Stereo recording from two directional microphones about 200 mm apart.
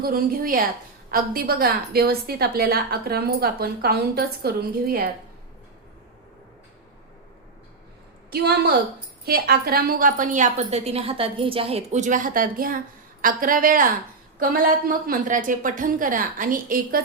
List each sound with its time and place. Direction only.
0.0 s a woman's voice: 50° right (ahead or behind)
8.3 s a woman's voice: 50° right (ahead or behind)